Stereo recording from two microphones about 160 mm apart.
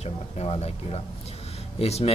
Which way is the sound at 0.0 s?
40° left (ahead or behind).